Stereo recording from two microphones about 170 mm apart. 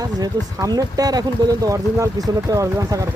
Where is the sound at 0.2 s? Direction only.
20° right (ahead or behind).